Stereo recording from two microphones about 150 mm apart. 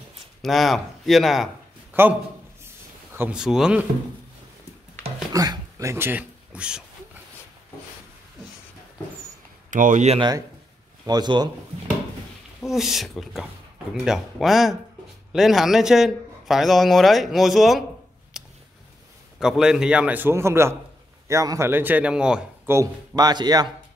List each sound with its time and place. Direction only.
0.4 s a man's voice: centre (ahead or behind)
1.9 s a sound: 10° right (ahead or behind)
3.3 s a man's voice: 5° right (ahead or behind)
5.3 s a sound: 25° right (ahead or behind); by 6.8 s 10° right (ahead or behind)
9.7 s speech: 60° right (ahead or behind)
10.1 s speech: 30° right (ahead or behind)
12.6 s a man's voice: centre (ahead or behind)
18.3 s a sound: centre (ahead or behind)
19.4 s a man's voice: 5° right (ahead or behind)
22.7 s speech: 25° right (ahead or behind)